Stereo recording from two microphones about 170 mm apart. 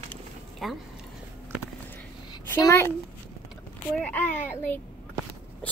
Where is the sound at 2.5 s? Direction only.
15° left (ahead or behind).